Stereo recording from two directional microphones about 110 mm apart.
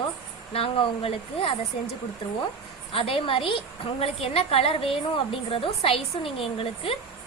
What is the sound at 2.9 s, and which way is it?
A woman's voice, 55° left (ahead or behind).